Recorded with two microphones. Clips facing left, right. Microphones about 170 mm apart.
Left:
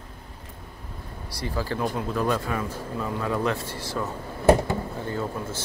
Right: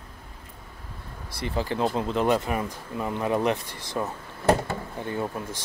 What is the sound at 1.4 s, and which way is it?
Speech, 20° right (ahead or behind).